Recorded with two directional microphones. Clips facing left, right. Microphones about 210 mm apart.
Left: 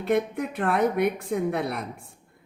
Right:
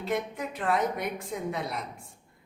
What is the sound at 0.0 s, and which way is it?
A woman's voice, 60° left (ahead or behind).